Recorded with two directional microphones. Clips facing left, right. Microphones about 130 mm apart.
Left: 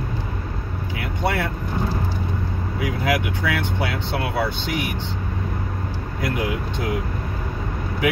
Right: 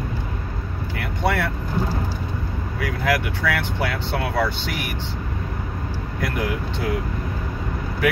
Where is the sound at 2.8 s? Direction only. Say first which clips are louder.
Even; 20° left (ahead or behind).